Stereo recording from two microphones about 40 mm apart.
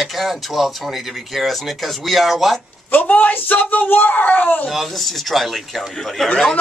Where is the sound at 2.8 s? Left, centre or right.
Left.